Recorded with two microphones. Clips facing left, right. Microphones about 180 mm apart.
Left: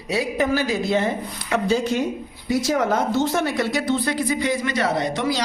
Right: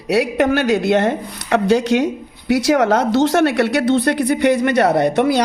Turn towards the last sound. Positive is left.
turn(degrees=-60)  # may be behind; listen again after turning